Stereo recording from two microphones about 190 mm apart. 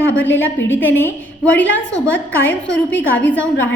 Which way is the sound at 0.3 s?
10° left (ahead or behind).